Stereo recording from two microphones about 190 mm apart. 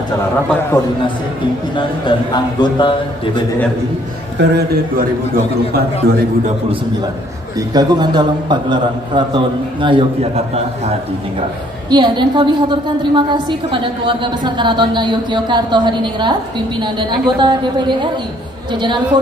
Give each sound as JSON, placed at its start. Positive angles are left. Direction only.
{"t": 1.8, "sound": "speech", "side_deg": 25}
{"t": 4.4, "sound": "a man's voice", "side_deg": -60}
{"t": 6.0, "sound": "a man's voice", "side_deg": -55}
{"t": 7.5, "sound": "a woman's voice", "side_deg": -20}